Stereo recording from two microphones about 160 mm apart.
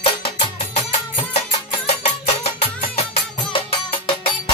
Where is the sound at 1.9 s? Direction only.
40° left (ahead or behind).